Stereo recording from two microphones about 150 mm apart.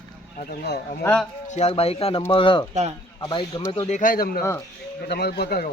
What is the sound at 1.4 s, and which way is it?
A man's voice, 45° left (ahead or behind).